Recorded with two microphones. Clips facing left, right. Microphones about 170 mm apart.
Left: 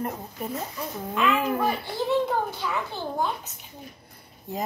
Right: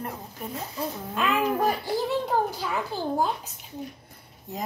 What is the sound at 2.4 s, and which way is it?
Speech, 35° right (ahead or behind).